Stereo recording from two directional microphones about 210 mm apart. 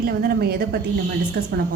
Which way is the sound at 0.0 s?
45° right (ahead or behind).